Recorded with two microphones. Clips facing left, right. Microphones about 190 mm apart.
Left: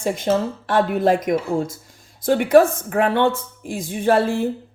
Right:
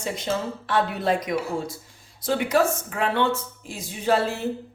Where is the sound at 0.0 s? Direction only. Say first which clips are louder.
Left 7 dB; 50° left (ahead or behind).